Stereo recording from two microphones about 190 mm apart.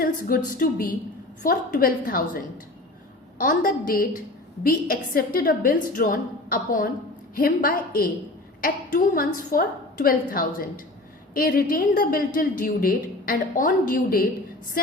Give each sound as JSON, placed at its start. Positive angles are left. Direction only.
{"t": 0.0, "sound": "a woman's voice", "side_deg": 50}